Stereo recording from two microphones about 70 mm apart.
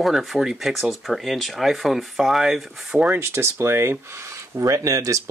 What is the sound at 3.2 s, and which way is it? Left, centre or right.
Speech, right.